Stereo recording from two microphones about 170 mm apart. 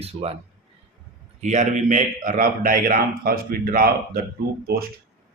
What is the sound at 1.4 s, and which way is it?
A man's voice, 45° right (ahead or behind).